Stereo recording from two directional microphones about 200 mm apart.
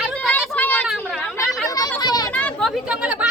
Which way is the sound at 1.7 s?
20° left (ahead or behind).